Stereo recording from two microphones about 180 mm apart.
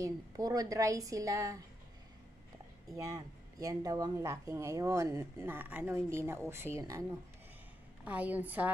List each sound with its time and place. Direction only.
0.0 s a woman's voice: 20° right (ahead or behind)
2.9 s a woman's voice: 20° right (ahead or behind)